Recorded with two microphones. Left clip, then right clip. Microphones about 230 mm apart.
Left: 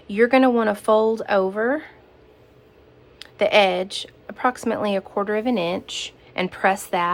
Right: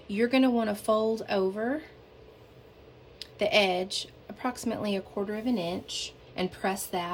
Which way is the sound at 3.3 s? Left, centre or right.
Centre.